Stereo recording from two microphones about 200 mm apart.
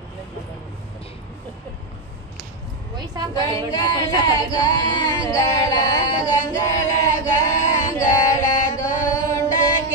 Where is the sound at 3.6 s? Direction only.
15° left (ahead or behind).